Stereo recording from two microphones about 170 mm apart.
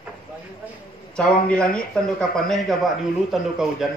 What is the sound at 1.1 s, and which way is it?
Speech, 5° left (ahead or behind).